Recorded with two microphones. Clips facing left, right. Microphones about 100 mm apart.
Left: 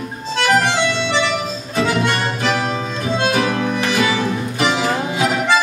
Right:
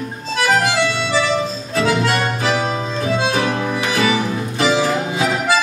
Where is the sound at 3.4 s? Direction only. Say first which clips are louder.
Left 1 dB; 20° right (ahead or behind).